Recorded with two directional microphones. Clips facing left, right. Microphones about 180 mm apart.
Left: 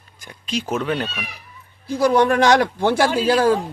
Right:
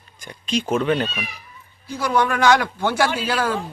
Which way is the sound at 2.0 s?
35° left (ahead or behind).